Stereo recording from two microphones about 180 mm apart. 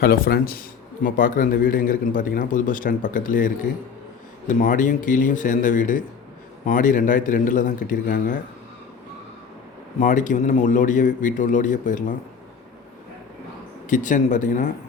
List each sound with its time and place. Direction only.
0.0 s a man's voice: 55° left (ahead or behind)
10.0 s a man's voice: 45° left (ahead or behind)
13.9 s a man's voice: 45° left (ahead or behind)